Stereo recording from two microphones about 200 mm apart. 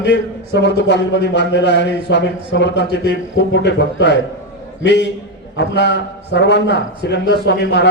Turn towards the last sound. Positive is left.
turn(degrees=55)  # may be behind; listen again after turning